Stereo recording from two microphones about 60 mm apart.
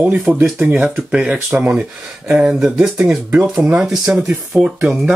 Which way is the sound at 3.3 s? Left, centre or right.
Right.